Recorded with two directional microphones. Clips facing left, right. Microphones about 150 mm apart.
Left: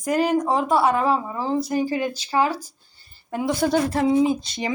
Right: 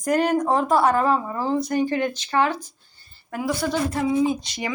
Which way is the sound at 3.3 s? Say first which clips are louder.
Left 3 dB; 25° left (ahead or behind).